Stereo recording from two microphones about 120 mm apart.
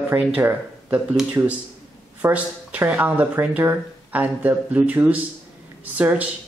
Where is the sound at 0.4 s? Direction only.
15° right (ahead or behind).